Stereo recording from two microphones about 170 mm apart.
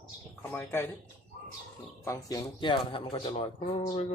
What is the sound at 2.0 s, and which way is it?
Speech, 20° left (ahead or behind).